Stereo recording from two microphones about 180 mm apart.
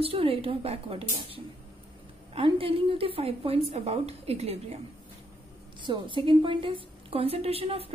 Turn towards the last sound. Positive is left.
turn(degrees=-30)  # may be behind; listen again after turning